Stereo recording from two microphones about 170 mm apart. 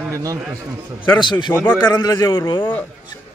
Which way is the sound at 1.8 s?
25° left (ahead or behind).